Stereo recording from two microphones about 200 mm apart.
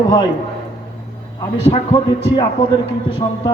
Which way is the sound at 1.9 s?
20° left (ahead or behind).